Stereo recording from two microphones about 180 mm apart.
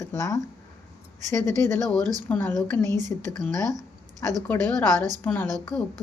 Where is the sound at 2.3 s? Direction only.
10° left (ahead or behind).